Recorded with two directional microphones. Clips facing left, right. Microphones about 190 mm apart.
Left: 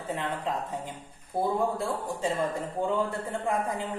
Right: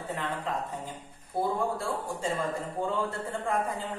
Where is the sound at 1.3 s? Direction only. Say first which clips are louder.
Left 2 dB; 20° left (ahead or behind).